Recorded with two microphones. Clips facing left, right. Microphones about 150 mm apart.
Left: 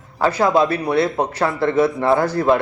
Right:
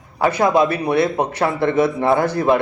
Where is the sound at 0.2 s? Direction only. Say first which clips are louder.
Right 1 dB; 20° right (ahead or behind).